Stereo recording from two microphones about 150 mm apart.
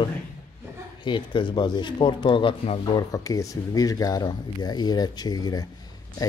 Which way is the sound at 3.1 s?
20° left (ahead or behind).